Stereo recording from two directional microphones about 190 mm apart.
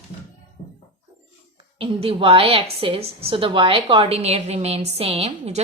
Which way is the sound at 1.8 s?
30° right (ahead or behind).